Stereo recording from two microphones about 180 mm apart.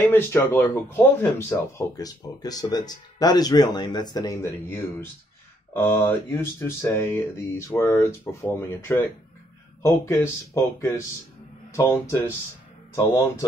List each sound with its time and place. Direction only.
0.1 s speech: 15° left (ahead or behind)